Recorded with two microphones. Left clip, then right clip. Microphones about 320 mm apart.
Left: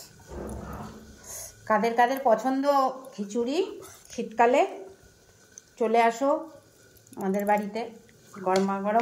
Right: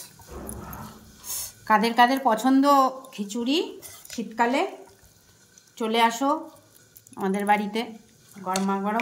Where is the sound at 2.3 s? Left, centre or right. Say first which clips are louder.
Right 3 dB; right.